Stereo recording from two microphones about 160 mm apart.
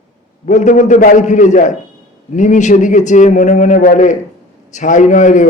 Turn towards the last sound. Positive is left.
turn(degrees=50)  # may be behind; listen again after turning